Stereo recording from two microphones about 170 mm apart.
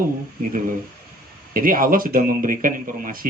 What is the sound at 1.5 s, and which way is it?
Speech, 55° right (ahead or behind).